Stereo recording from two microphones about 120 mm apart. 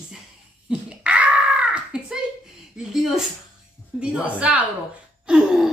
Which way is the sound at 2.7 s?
5° right (ahead or behind).